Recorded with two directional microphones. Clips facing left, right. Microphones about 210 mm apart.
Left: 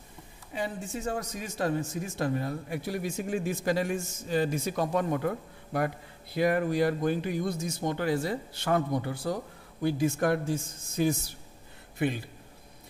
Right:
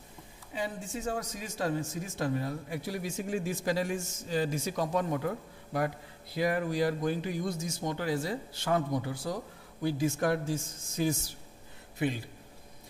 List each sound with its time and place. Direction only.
0.6 s speech: 60° left (ahead or behind)